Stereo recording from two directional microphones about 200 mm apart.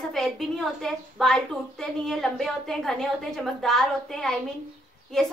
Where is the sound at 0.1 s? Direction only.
Centre (ahead or behind).